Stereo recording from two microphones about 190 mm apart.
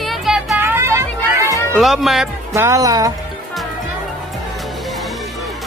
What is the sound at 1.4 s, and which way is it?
Music, 15° left (ahead or behind).